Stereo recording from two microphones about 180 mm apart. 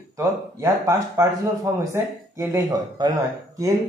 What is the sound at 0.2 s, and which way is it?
Speech, 15° right (ahead or behind).